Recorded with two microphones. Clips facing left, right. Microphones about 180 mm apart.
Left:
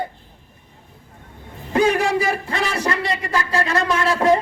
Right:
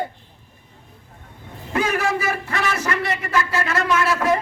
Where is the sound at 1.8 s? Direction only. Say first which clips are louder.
Left 5 dB; 30° left (ahead or behind).